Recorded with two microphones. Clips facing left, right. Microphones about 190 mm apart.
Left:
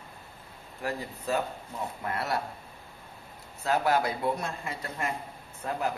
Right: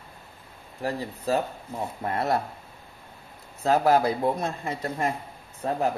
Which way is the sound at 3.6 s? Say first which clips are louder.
Right 5 dB; 35° right (ahead or behind).